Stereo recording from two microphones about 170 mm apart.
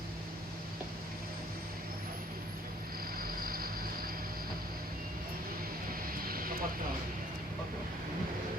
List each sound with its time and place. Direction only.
3.4 s vehicle: 60° right (ahead or behind)
6.2 s vehicle: 55° right (ahead or behind)